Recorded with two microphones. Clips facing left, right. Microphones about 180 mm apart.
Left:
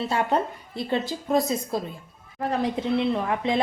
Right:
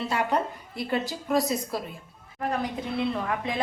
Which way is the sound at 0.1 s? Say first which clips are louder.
Left 2 dB; 30° left (ahead or behind).